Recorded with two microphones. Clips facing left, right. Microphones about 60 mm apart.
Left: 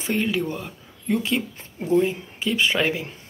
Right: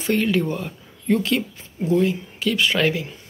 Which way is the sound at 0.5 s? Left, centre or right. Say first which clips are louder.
Right 4 dB; centre.